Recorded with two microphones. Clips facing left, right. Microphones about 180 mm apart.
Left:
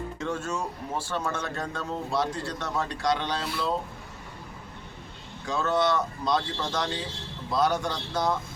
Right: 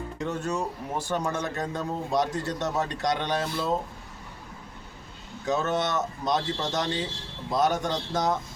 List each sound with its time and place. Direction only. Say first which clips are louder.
0.2 s a man's voice: right 3 dB; 15° right (ahead or behind)
5.5 s a man's voice: left 1 dB; 20° right (ahead or behind)